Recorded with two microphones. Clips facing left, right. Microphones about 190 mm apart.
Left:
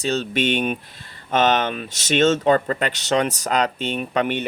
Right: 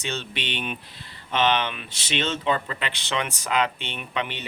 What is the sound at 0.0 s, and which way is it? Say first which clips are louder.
Speech: left 10 dB; 40° left (ahead or behind).